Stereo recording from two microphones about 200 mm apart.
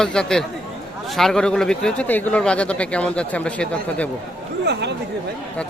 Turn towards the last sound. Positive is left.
turn(degrees=-55)  # may be behind; listen again after turning